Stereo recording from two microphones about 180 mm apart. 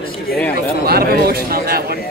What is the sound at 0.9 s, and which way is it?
A man's voice, 60° right (ahead or behind).